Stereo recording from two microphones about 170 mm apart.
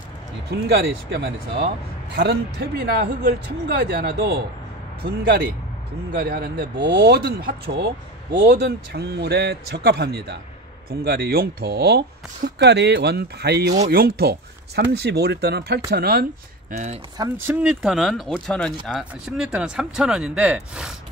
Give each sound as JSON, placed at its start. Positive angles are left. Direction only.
{"t": 0.5, "sound": "speech", "side_deg": -75}
{"t": 6.1, "sound": "speech", "side_deg": -65}
{"t": 12.4, "sound": "speech", "side_deg": -90}
{"t": 13.7, "sound": "speech", "side_deg": -55}
{"t": 14.8, "sound": "speech", "side_deg": -75}
{"t": 16.7, "sound": "speech", "side_deg": -40}
{"t": 17.5, "sound": "speech", "side_deg": -5}